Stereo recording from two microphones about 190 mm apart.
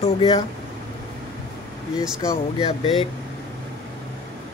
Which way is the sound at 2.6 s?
30° left (ahead or behind).